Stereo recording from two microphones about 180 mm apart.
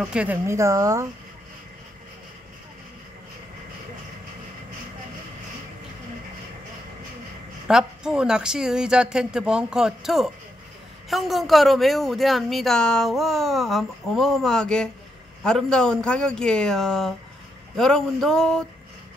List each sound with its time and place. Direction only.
0.0 s speech: 5° right (ahead or behind)
7.6 s speech: 5° right (ahead or behind)